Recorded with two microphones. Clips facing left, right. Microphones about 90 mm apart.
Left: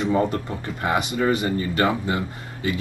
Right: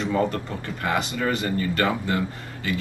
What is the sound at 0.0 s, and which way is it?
Speech, 20° left (ahead or behind).